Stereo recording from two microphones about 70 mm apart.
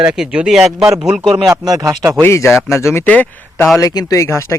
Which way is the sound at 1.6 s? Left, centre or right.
Right.